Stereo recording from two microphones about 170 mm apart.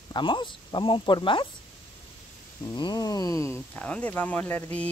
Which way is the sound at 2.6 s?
25° left (ahead or behind).